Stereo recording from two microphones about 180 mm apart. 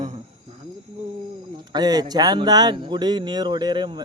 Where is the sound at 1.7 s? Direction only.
20° right (ahead or behind).